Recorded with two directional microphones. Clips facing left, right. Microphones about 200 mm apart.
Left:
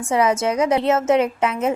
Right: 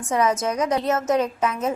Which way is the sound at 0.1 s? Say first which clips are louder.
Left 3 dB; 30° left (ahead or behind).